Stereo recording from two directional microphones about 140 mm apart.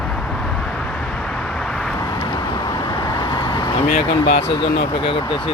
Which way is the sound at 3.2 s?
30° left (ahead or behind).